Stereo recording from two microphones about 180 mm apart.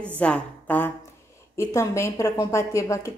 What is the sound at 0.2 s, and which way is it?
A woman's voice, 10° left (ahead or behind).